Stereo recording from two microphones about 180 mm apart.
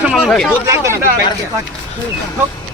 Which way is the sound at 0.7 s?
15° right (ahead or behind).